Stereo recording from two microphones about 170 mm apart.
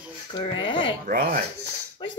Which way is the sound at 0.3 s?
30° left (ahead or behind).